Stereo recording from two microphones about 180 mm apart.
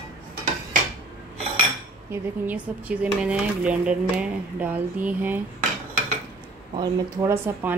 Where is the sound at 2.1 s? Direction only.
10° right (ahead or behind).